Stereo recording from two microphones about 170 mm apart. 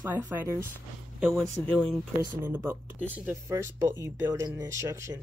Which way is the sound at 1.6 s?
5° left (ahead or behind).